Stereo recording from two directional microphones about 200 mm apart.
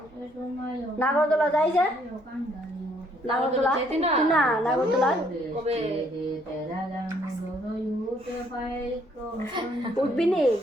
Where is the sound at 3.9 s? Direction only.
35° right (ahead or behind).